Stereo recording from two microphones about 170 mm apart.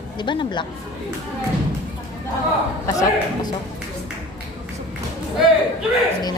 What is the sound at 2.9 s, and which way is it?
Speech, 20° left (ahead or behind).